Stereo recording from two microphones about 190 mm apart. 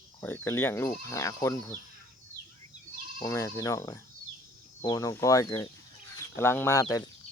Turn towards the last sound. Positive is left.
turn(degrees=15)  # may be behind; listen again after turning